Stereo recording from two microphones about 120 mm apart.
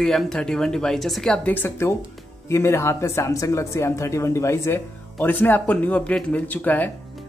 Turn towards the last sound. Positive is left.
turn(degrees=15)  # may be behind; listen again after turning